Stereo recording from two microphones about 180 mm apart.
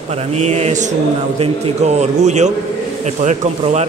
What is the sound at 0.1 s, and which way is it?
Speech, 35° right (ahead or behind).